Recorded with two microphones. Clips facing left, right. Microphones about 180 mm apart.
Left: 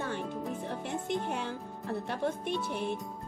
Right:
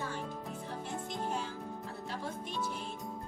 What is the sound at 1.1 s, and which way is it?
Speech, 65° left (ahead or behind).